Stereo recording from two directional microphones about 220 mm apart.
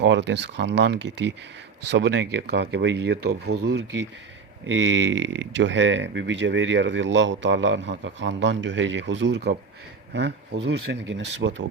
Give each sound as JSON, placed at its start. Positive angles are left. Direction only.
{"t": 0.0, "sound": "speech", "side_deg": -50}